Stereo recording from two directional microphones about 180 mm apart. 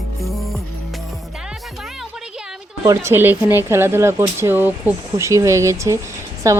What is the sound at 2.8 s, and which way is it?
Speech, 15° right (ahead or behind).